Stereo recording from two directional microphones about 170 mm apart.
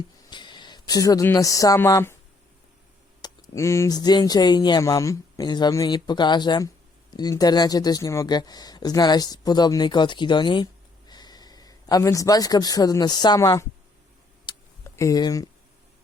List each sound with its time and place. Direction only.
0.3 s speech: 25° left (ahead or behind)
3.2 s speech: 20° left (ahead or behind)
14.9 s speech: 20° left (ahead or behind)